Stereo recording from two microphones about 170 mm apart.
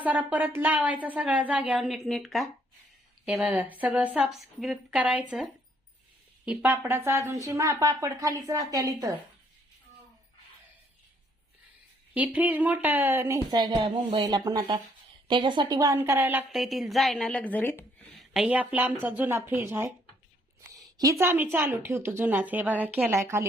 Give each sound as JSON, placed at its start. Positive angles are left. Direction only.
{"t": 0.0, "sound": "a woman's voice", "side_deg": -10}
{"t": 12.1, "sound": "a woman's voice", "side_deg": -10}
{"t": 18.2, "sound": "a woman's voice", "side_deg": -5}